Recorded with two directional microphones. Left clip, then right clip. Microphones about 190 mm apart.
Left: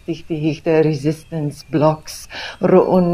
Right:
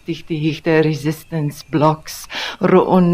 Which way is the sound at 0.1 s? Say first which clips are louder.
Even; 15° right (ahead or behind).